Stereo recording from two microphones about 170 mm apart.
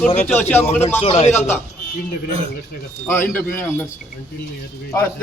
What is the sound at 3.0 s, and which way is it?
Speech, 15° left (ahead or behind).